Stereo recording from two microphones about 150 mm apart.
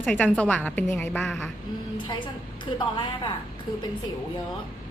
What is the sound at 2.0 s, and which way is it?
A woman's voice, 30° left (ahead or behind).